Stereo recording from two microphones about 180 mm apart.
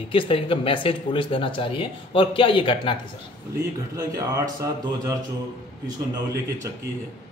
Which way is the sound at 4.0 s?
20° right (ahead or behind).